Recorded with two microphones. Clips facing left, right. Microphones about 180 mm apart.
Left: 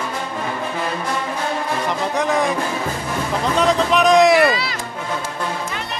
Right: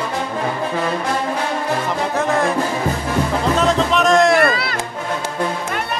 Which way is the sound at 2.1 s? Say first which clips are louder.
Right 1 dB; centre (ahead or behind).